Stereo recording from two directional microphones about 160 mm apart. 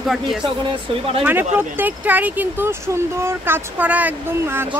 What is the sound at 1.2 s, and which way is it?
Speech, 10° right (ahead or behind).